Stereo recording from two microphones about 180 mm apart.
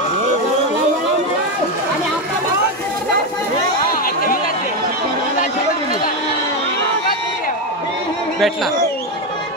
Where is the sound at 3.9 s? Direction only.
50° left (ahead or behind).